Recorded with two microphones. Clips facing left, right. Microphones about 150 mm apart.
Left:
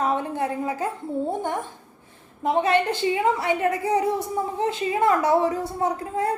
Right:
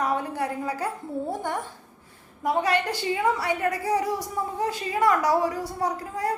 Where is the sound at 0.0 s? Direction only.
25° left (ahead or behind).